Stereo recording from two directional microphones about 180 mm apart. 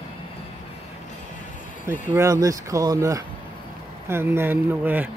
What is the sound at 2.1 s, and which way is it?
Speech, 15° right (ahead or behind).